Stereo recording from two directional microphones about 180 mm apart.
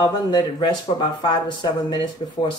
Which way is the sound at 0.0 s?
25° left (ahead or behind).